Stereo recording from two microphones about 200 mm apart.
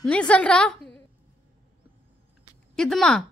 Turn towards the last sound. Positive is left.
turn(degrees=5)  # may be behind; listen again after turning